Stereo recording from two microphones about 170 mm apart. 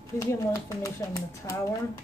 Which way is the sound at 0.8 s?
15° left (ahead or behind).